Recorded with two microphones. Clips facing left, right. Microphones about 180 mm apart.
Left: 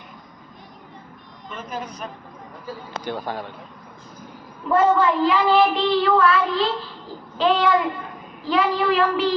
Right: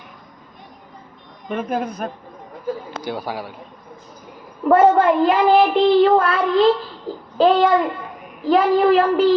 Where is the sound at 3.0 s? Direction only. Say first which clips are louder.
Right 2 dB; 10° right (ahead or behind).